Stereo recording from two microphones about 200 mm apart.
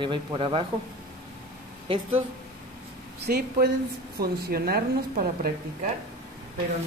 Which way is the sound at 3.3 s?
50° right (ahead or behind).